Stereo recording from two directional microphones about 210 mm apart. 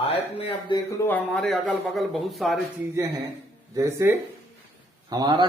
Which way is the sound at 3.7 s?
10° right (ahead or behind).